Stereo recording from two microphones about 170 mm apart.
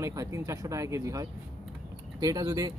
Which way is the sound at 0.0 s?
20° right (ahead or behind).